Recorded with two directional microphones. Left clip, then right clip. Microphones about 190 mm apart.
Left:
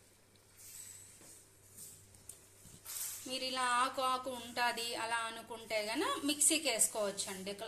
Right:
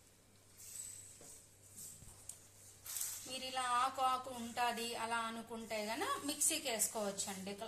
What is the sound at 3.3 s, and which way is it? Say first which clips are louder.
A woman's voice: left 3 dB; 35° left (ahead or behind).